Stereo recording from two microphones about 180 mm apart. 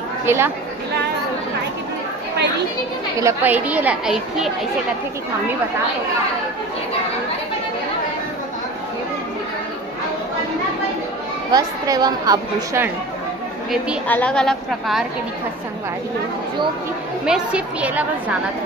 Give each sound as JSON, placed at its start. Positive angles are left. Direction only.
{"t": 0.3, "sound": "a woman's voice", "side_deg": -10}
{"t": 3.2, "sound": "a woman's voice", "side_deg": -15}
{"t": 11.5, "sound": "speech", "side_deg": -20}
{"t": 14.0, "sound": "a woman's voice", "side_deg": 5}
{"t": 17.3, "sound": "a woman's voice", "side_deg": -5}